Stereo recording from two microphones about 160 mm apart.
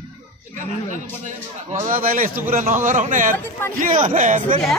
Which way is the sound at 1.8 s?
60° right (ahead or behind).